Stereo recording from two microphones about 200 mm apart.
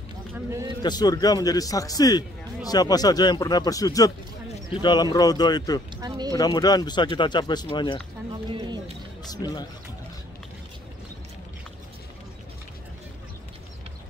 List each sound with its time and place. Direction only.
0.3 s a man's voice: 15° right (ahead or behind)
0.8 s speech: 20° left (ahead or behind)
5.9 s a sound: 20° right (ahead or behind)
6.3 s speech: 20° left (ahead or behind)
8.5 s a sound: 20° right (ahead or behind)
9.3 s speech: 20° left (ahead or behind)